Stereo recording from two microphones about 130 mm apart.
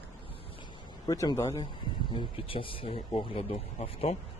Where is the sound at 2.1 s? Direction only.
40° left (ahead or behind).